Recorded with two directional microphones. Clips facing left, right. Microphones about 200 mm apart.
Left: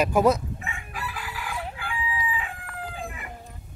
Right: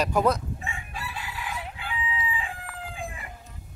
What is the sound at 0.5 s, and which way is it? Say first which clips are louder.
Chicken: left 1 dB; 30° right (ahead or behind).